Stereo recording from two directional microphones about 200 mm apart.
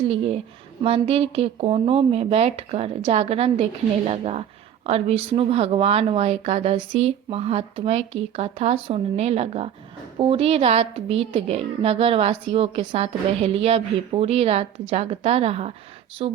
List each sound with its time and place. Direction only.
0.1 s a woman's voice: 30° right (ahead or behind)